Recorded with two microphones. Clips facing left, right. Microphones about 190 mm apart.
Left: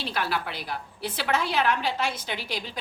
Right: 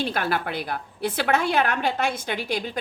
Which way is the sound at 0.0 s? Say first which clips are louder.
Right 4 dB; 50° right (ahead or behind).